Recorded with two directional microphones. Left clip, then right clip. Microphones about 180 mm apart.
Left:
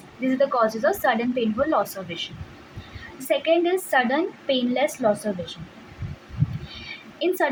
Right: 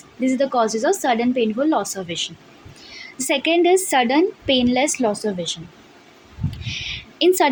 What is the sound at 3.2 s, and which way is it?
A woman's voice, 40° right (ahead or behind).